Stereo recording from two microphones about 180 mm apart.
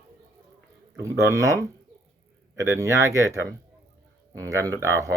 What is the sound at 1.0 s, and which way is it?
Speech, 15° right (ahead or behind).